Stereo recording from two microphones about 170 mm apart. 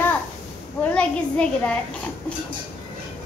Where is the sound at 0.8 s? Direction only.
5° left (ahead or behind).